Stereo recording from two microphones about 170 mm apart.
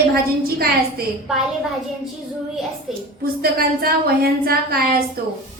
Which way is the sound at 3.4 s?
65° right (ahead or behind).